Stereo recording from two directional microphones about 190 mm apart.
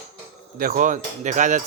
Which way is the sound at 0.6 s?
45° right (ahead or behind).